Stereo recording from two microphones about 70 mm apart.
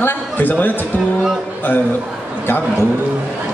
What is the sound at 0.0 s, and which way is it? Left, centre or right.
Speech, left.